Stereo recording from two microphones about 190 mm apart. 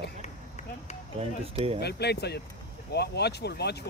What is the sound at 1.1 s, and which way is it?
Speech, 30° right (ahead or behind).